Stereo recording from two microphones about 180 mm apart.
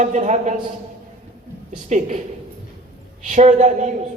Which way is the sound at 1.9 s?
40° right (ahead or behind).